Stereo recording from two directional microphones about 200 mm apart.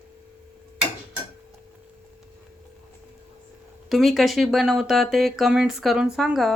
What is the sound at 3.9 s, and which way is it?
Speech, centre (ahead or behind).